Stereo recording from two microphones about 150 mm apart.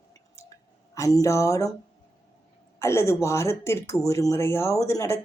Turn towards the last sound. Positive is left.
turn(degrees=20)  # may be behind; listen again after turning